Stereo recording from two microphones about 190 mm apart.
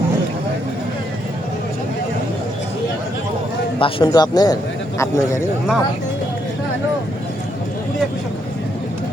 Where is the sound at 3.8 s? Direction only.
30° left (ahead or behind).